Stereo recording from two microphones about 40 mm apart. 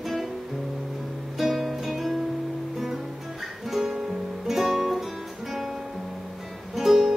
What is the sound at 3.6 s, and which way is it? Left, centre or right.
Music, centre.